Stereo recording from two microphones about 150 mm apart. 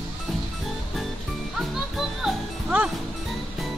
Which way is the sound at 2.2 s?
5° right (ahead or behind).